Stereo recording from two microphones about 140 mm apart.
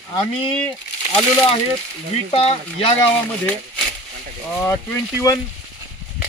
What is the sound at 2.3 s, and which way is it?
Speech, 40° left (ahead or behind).